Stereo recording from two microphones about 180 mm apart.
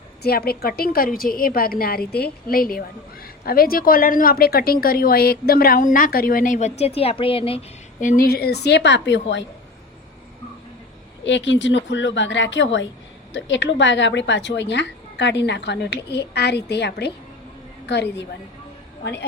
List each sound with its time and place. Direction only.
0.2 s a woman's voice: 60° left (ahead or behind); by 7.6 s 30° left (ahead or behind)
8.0 s speech: 50° left (ahead or behind); by 9.4 s 75° left (ahead or behind)
11.3 s speech: 90° left; by 18.3 s 75° left (ahead or behind)